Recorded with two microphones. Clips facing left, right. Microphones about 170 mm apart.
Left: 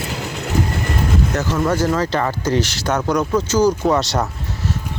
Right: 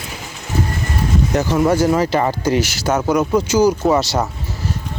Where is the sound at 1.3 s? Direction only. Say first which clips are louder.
Right 7 dB; 15° right (ahead or behind).